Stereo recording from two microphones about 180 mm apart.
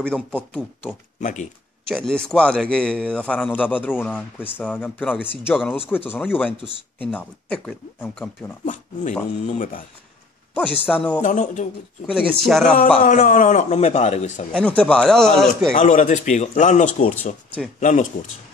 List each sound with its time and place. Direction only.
0.0 s a man's voice: 5° left (ahead or behind)
1.2 s speech: 45° left (ahead or behind)
1.9 s a man's voice: 5° left (ahead or behind)
9.5 s speech: 45° left (ahead or behind)
10.5 s a man's voice: 10° left (ahead or behind)
11.2 s speech: 45° left (ahead or behind)
12.1 s speech: centre (ahead or behind)
12.7 s a man's voice: 45° left (ahead or behind)
14.5 s speech: 5° left (ahead or behind)
15.7 s speech: 45° left (ahead or behind)